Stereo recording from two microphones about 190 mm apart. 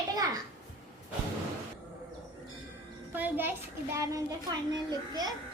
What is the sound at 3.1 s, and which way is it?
Music, 10° right (ahead or behind).